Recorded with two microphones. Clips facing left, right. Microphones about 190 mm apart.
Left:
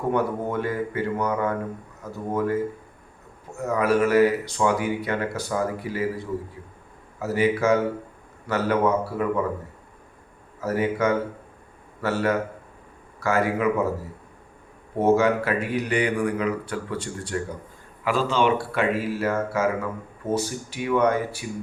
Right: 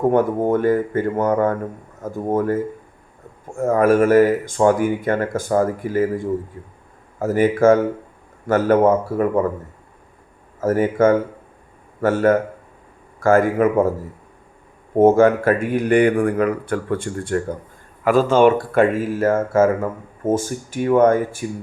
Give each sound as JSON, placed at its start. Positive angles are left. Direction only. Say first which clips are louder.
{"t": 0.1, "sound": "speech", "louder": "right 7 dB", "side_deg": -50}
{"t": 10.6, "sound": "speech", "louder": "right 7 dB", "side_deg": -45}
{"t": 14.9, "sound": "speech", "louder": "right 7 dB", "side_deg": -50}